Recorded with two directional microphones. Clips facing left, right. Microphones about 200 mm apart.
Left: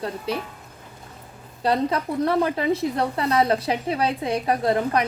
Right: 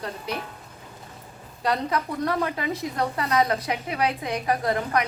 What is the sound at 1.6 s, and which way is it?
A woman's voice, 30° left (ahead or behind).